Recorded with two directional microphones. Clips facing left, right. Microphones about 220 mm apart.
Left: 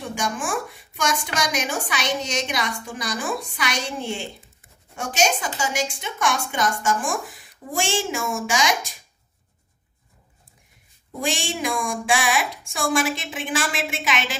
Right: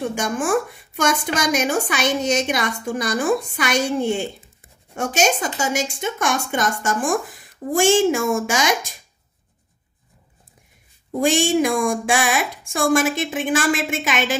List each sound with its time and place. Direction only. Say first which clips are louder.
0.1 s a woman's voice: right 6 dB; 50° right (ahead or behind)
11.1 s a woman's voice: right 9 dB; 50° right (ahead or behind)